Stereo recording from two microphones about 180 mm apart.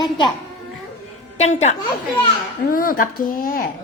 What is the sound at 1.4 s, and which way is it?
Speech, 40° left (ahead or behind).